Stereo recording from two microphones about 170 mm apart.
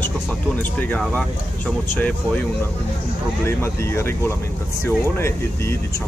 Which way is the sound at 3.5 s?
15° left (ahead or behind).